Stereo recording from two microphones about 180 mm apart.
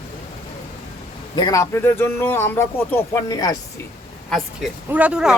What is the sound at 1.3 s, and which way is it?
A man's voice, 20° left (ahead or behind).